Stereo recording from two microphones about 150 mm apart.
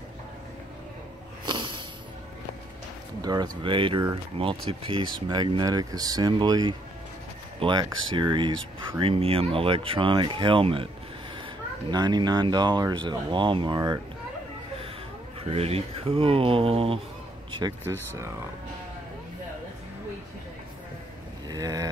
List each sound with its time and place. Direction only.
1.4 s sniff: 30° right (ahead or behind)
3.2 s speech: 25° right (ahead or behind)
11.9 s speech: 30° right (ahead or behind)
15.5 s speech: 40° right (ahead or behind)
21.5 s boat: 25° right (ahead or behind)